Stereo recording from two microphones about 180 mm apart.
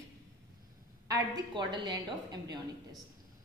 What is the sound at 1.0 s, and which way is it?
Speech, 20° right (ahead or behind).